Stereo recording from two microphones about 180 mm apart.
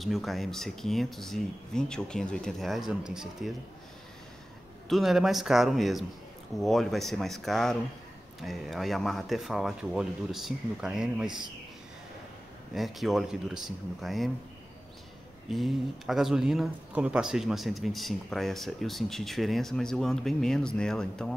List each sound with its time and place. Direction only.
0.0 s speech: centre (ahead or behind)
4.8 s speech: centre (ahead or behind)
12.7 s speech: centre (ahead or behind)
15.4 s speech: centre (ahead or behind)